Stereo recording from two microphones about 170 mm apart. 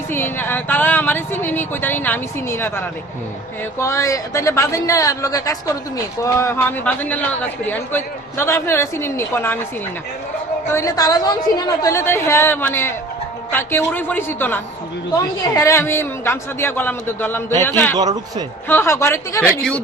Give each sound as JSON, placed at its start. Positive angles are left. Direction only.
{"t": 0.1, "sound": "a man's voice", "side_deg": 10}
{"t": 10.7, "sound": "a man's voice", "side_deg": 20}
{"t": 17.9, "sound": "speech", "side_deg": -25}
{"t": 18.7, "sound": "a man's voice", "side_deg": 15}